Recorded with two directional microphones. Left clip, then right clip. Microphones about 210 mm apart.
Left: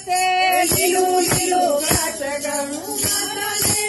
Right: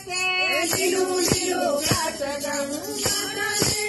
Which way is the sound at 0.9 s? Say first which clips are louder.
Left 5 dB; 15° right (ahead or behind).